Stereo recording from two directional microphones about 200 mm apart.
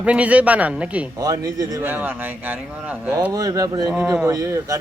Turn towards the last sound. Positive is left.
turn(degrees=-15)  # may be behind; listen again after turning